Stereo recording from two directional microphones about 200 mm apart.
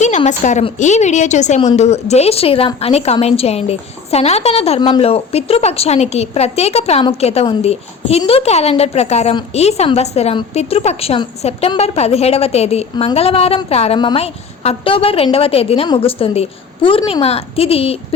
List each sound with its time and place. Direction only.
0.0 s a woman's voice: 35° left (ahead or behind)